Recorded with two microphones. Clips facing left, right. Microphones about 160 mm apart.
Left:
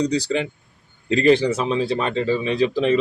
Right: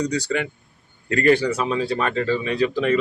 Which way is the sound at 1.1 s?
20° left (ahead or behind).